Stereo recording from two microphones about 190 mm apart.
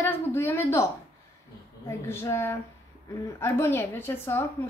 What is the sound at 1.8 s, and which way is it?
Speech, 15° left (ahead or behind).